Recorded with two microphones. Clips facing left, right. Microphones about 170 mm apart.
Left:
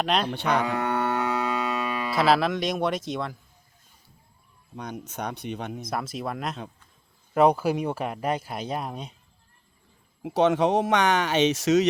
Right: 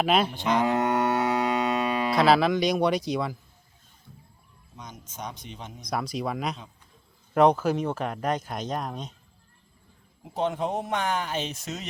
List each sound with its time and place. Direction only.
0.0 s speech: 5° right (ahead or behind)
0.3 s speech: 65° left (ahead or behind)
0.6 s cattle: 20° right (ahead or behind)
2.1 s speech: centre (ahead or behind)
4.8 s speech: 65° left (ahead or behind)
5.9 s speech: centre (ahead or behind)
10.2 s speech: 80° left